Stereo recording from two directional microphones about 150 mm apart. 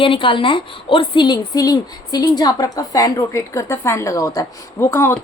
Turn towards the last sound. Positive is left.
turn(degrees=15)  # may be behind; listen again after turning